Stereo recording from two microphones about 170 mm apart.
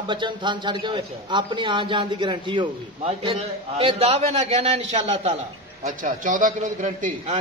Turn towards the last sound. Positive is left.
turn(degrees=-45)  # may be behind; listen again after turning